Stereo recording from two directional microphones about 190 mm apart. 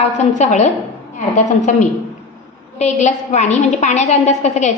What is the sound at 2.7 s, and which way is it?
A woman's voice, 35° left (ahead or behind).